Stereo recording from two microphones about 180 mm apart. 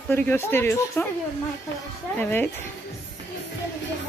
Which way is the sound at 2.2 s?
10° left (ahead or behind).